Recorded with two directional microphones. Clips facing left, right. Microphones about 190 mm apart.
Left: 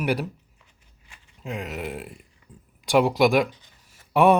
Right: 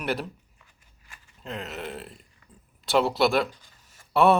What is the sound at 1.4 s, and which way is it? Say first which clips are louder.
Speech: left 3 dB; 10° left (ahead or behind).